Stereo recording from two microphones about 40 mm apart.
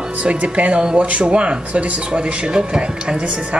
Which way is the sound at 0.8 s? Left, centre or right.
Centre.